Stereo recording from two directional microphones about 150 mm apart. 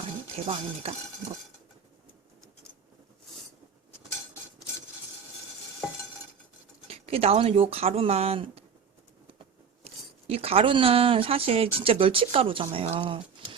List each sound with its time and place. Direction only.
0.4 s dishes: 40° right (ahead or behind)
6.8 s speech: 40° right (ahead or behind)
9.8 s speech: 40° right (ahead or behind)
13.0 s a sound: 35° right (ahead or behind)